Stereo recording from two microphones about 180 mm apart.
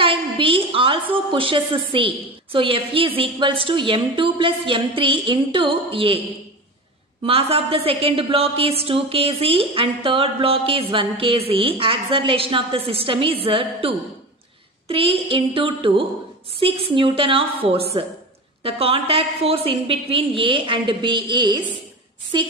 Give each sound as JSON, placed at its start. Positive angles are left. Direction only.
{"t": 0.0, "sound": "a woman's voice", "side_deg": -30}
{"t": 7.2, "sound": "a woman's voice", "side_deg": -30}